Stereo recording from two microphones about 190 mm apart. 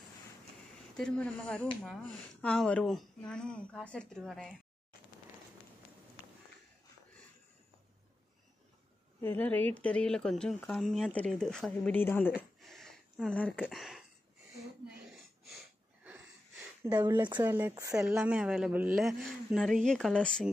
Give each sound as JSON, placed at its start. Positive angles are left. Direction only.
{"t": 0.9, "sound": "speech", "side_deg": 5}
{"t": 9.2, "sound": "speech", "side_deg": 10}
{"t": 12.4, "sound": "a sound", "side_deg": 0}
{"t": 16.8, "sound": "speech", "side_deg": -15}
{"t": 17.9, "sound": "speech", "side_deg": -5}